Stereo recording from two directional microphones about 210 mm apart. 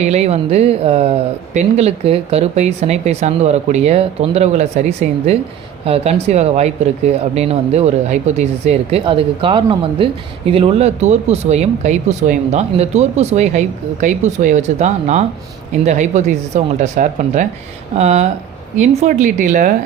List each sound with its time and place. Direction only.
0.0 s speech: 30° right (ahead or behind)